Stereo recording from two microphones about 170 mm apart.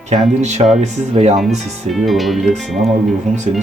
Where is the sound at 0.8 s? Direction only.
40° right (ahead or behind).